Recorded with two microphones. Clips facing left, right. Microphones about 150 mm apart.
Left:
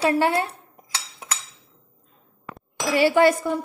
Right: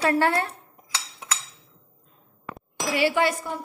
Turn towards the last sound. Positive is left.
turn(degrees=40)  # may be behind; listen again after turning